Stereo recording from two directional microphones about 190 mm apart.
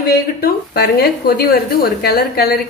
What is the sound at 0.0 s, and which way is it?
A woman's voice, 55° left (ahead or behind).